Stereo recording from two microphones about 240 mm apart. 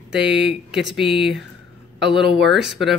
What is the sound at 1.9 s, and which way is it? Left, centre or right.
Speech, right.